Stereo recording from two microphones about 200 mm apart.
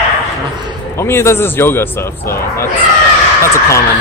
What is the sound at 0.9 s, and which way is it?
Speech, 15° left (ahead or behind).